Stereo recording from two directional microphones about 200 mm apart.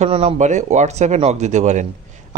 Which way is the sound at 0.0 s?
30° right (ahead or behind).